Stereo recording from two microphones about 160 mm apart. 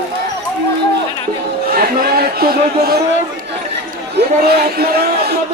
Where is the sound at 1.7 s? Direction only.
70° right (ahead or behind).